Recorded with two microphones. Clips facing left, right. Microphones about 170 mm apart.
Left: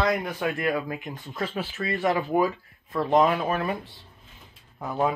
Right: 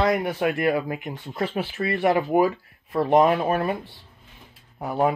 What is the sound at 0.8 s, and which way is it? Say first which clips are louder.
Speech: right 3 dB; 15° right (ahead or behind).